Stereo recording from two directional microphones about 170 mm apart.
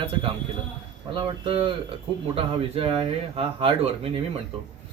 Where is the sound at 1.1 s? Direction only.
30° right (ahead or behind).